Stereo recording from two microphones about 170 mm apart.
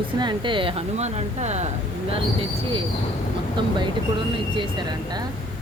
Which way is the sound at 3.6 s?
30° right (ahead or behind).